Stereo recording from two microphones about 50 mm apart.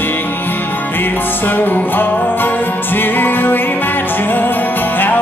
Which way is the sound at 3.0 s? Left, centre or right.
Left.